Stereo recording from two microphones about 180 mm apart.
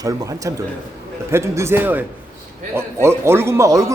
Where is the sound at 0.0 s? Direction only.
20° right (ahead or behind).